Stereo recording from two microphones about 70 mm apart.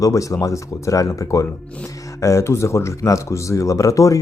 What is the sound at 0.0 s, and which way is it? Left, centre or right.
Speech, left.